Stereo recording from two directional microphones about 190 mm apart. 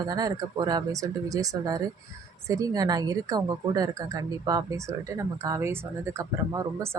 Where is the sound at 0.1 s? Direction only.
20° right (ahead or behind).